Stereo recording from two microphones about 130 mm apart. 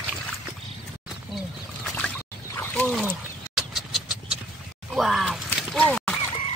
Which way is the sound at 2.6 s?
15° left (ahead or behind).